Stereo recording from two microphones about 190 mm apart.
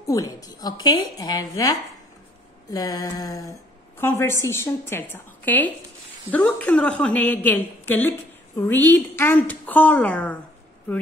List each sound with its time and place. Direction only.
0.0 s a woman's voice: 20° left (ahead or behind)